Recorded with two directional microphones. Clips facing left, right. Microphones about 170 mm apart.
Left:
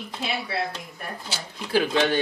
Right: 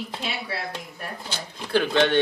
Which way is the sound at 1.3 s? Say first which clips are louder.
Even; 5° left (ahead or behind).